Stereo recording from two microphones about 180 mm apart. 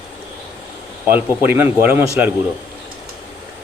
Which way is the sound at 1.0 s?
10° right (ahead or behind).